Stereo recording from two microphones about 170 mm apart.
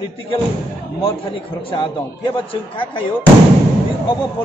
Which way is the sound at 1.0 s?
30° left (ahead or behind).